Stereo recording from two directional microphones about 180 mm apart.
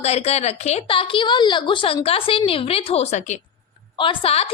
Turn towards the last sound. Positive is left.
turn(degrees=35)  # may be behind; listen again after turning